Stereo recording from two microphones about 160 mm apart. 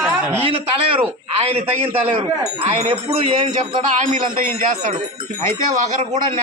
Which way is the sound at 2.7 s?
40° right (ahead or behind).